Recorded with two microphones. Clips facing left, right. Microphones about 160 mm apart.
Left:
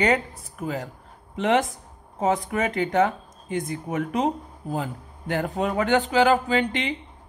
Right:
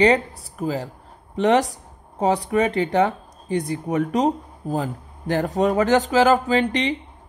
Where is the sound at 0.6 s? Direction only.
30° right (ahead or behind).